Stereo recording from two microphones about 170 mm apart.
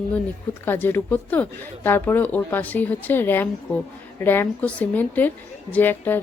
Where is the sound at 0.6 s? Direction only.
10° left (ahead or behind).